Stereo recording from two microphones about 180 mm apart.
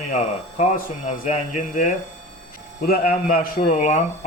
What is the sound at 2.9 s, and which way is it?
Speech, 50° left (ahead or behind).